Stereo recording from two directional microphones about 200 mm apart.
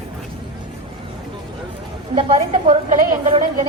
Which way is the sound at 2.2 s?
25° right (ahead or behind).